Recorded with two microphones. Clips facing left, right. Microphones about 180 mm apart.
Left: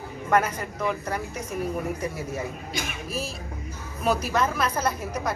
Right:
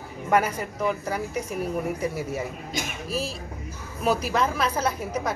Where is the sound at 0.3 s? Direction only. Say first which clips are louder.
Right 1 dB; 5° right (ahead or behind).